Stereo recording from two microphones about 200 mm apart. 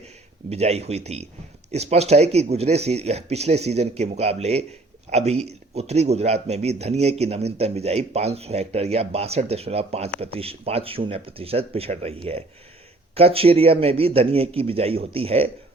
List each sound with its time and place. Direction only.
0.5 s speech: 30° right (ahead or behind)